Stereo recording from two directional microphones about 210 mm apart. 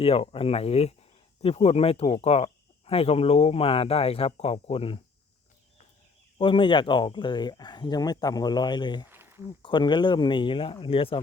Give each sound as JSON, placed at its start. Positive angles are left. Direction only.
{"t": 0.0, "sound": "speech", "side_deg": 25}
{"t": 6.4, "sound": "speech", "side_deg": 25}
{"t": 9.0, "sound": "a sound", "side_deg": -10}
{"t": 9.6, "sound": "speech", "side_deg": 20}